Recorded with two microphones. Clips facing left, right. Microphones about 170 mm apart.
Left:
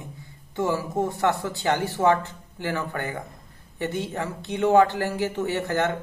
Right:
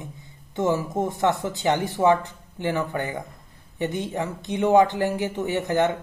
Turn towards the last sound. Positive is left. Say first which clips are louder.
# right 2 dB
turn(degrees=-15)  # may be behind; listen again after turning